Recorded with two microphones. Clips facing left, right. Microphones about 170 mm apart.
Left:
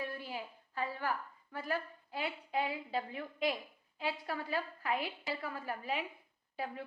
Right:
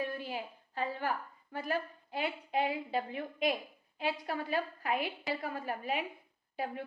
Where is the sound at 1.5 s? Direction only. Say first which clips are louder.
Right 3 dB; 20° right (ahead or behind).